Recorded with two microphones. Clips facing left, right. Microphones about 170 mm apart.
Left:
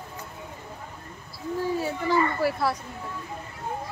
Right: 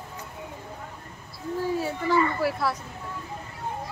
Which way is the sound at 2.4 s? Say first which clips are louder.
Left 1 dB; centre (ahead or behind).